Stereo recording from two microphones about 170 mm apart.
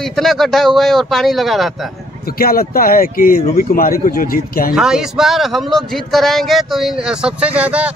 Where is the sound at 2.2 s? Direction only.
60° left (ahead or behind).